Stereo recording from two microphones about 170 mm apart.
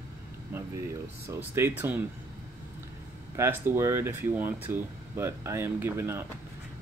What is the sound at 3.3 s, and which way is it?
Speech, 15° right (ahead or behind).